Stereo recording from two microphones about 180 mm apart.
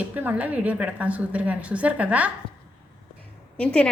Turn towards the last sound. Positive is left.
turn(degrees=5)  # may be behind; listen again after turning